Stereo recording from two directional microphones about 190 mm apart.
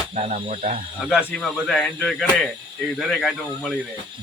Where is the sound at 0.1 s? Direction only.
35° right (ahead or behind).